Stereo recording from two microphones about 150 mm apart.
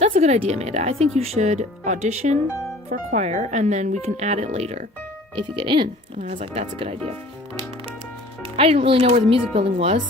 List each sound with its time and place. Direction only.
0.0 s speech: 50° right (ahead or behind)
5.3 s speech: 35° right (ahead or behind)
8.5 s speech: 40° right (ahead or behind)